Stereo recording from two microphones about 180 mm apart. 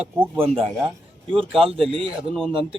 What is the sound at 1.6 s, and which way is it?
Speech, 30° right (ahead or behind).